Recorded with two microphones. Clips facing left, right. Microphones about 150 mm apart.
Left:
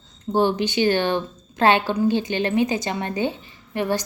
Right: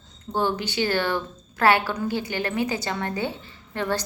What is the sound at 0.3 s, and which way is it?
A woman's voice, 20° left (ahead or behind).